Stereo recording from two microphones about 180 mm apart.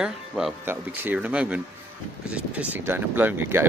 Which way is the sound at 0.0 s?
Centre (ahead or behind).